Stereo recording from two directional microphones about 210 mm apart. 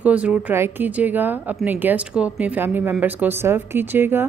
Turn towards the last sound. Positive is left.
turn(degrees=-10)  # may be behind; listen again after turning